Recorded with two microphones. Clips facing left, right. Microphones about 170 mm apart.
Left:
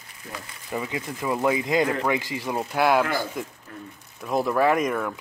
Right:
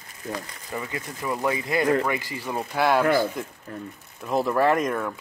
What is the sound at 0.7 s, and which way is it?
Speech, 15° left (ahead or behind).